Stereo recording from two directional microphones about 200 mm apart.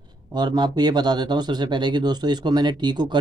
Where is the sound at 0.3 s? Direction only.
20° right (ahead or behind).